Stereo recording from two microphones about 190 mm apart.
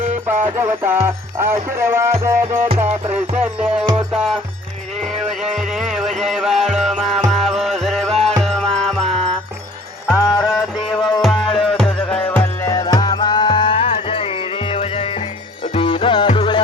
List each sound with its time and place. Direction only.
0.0 s music: 10° right (ahead or behind)
10.2 s music: 15° left (ahead or behind)
11.2 s music: centre (ahead or behind); by 16.6 s 25° left (ahead or behind)